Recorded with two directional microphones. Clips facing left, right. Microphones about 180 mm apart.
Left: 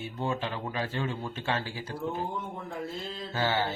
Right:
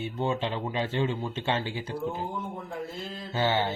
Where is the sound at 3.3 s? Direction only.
20° right (ahead or behind).